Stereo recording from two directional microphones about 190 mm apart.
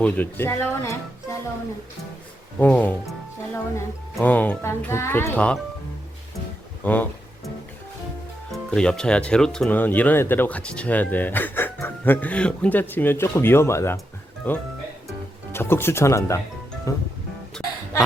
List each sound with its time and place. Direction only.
0.0 s speech: 10° left (ahead or behind)
2.6 s speech: 10° left (ahead or behind)
6.8 s speech: 10° left (ahead or behind)
8.5 s speech: 5° left (ahead or behind)